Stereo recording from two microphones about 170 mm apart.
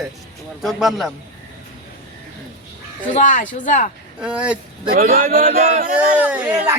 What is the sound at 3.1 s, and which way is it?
Speech, 50° left (ahead or behind).